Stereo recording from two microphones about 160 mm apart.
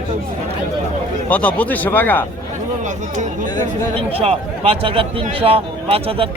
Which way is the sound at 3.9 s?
40° right (ahead or behind).